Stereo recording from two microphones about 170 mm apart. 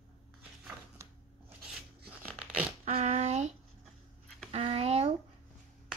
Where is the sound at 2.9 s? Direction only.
40° right (ahead or behind).